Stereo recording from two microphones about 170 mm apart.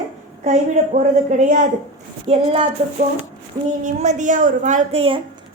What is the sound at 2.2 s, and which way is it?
Speech, 35° right (ahead or behind).